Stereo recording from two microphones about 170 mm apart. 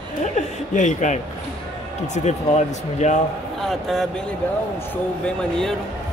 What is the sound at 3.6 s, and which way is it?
Speech, centre (ahead or behind).